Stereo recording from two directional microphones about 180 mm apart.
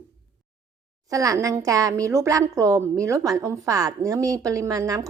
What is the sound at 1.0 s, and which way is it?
A woman's voice, 20° right (ahead or behind).